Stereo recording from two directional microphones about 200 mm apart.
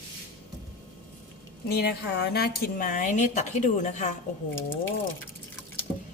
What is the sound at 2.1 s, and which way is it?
Speech, 55° left (ahead or behind).